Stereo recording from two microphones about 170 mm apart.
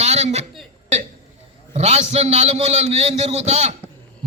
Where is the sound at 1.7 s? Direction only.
40° right (ahead or behind).